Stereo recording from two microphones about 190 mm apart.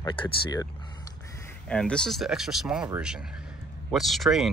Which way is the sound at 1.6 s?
5° left (ahead or behind).